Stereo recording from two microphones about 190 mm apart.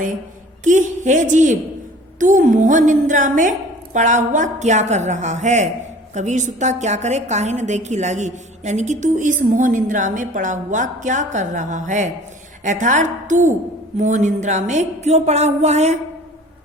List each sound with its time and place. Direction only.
0.6 s a woman's voice: 40° right (ahead or behind)